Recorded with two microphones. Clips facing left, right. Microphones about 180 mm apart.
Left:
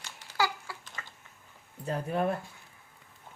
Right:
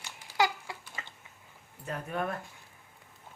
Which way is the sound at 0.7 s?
20° right (ahead or behind).